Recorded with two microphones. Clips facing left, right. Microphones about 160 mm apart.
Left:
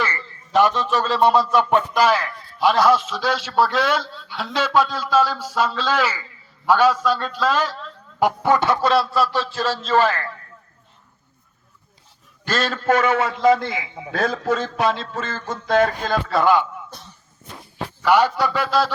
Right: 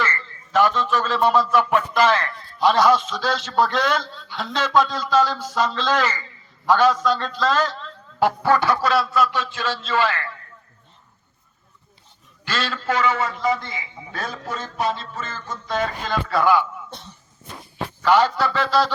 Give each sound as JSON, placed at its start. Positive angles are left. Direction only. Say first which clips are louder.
{"t": 0.0, "sound": "a man's voice", "louder": "even", "side_deg": 15}
{"t": 8.4, "sound": "speech", "louder": "left 2 dB", "side_deg": 20}
{"t": 12.5, "sound": "a man's voice", "louder": "left 5 dB", "side_deg": 45}
{"t": 16.3, "sound": "a man's voice", "louder": "left 1 dB", "side_deg": 25}
{"t": 18.0, "sound": "a man's voice", "louder": "left 1 dB", "side_deg": 10}